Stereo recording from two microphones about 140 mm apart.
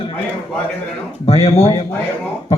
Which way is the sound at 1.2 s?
45° left (ahead or behind).